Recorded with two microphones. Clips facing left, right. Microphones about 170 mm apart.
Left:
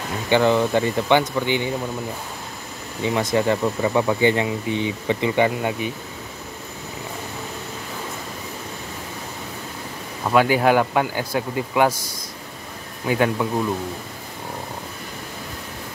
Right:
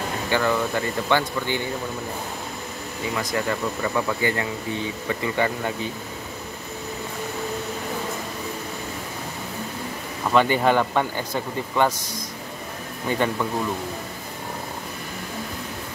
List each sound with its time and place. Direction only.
0.3 s speech: 20° left (ahead or behind)
3.2 s speech: 20° left (ahead or behind)
10.3 s a man's voice: 5° left (ahead or behind)